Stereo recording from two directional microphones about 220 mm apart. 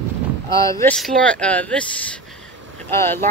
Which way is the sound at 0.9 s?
5° left (ahead or behind).